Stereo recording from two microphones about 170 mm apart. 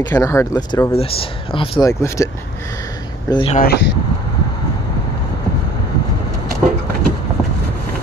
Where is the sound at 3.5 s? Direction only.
60° left (ahead or behind).